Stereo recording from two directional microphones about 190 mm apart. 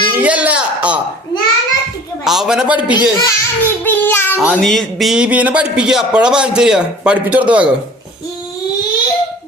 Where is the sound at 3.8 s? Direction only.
10° left (ahead or behind).